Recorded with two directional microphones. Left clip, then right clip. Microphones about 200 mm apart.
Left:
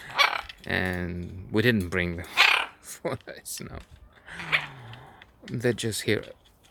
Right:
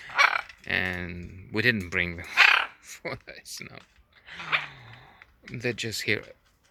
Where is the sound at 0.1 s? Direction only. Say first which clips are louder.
Right 1 dB; 5° right (ahead or behind).